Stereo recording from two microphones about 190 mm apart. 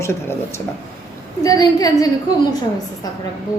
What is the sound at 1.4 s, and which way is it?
Speech, 20° left (ahead or behind).